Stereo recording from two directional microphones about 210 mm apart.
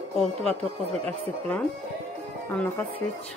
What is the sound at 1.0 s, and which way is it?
Speech, 10° left (ahead or behind).